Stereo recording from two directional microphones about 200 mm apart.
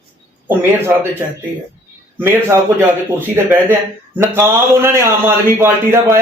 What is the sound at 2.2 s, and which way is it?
Speech, 15° right (ahead or behind).